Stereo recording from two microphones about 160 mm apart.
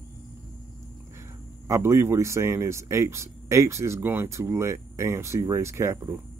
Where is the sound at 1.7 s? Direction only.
15° right (ahead or behind).